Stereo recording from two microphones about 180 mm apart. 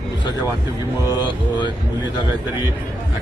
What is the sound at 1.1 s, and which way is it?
Speech, 25° left (ahead or behind).